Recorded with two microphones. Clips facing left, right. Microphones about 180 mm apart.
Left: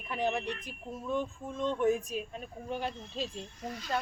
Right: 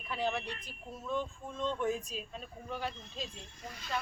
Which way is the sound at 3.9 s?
40° left (ahead or behind).